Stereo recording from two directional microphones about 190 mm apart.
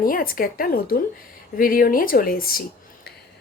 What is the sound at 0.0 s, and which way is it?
A woman's voice, 50° left (ahead or behind).